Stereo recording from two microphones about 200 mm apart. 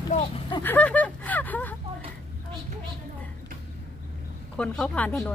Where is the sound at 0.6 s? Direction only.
10° left (ahead or behind).